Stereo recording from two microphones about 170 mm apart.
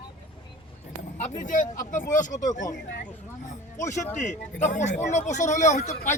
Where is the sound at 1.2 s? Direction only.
50° left (ahead or behind).